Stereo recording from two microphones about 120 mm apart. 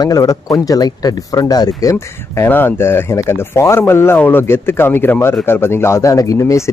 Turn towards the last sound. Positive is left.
turn(degrees=25)  # may be behind; listen again after turning